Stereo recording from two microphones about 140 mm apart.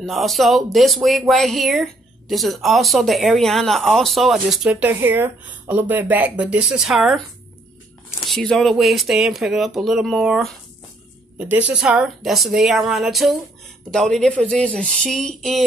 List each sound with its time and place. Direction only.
0.0 s speech: centre (ahead or behind)
8.3 s speech: 5° left (ahead or behind)